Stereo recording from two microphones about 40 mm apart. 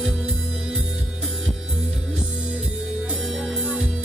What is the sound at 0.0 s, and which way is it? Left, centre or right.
Music, centre.